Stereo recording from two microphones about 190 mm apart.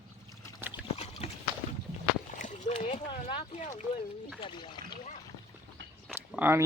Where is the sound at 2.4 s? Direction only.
40° left (ahead or behind).